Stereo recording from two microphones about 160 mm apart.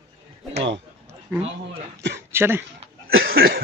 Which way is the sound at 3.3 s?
70° right (ahead or behind).